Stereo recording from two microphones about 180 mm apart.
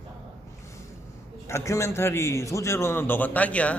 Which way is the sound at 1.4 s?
15° left (ahead or behind).